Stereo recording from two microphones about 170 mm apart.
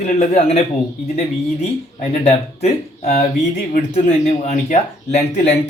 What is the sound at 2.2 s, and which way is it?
Speech, 40° left (ahead or behind).